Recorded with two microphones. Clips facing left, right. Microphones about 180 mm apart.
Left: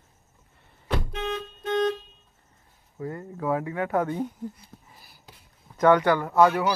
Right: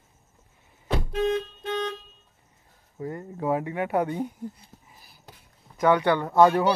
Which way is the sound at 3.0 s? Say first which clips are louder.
Right 1 dB; 25° right (ahead or behind).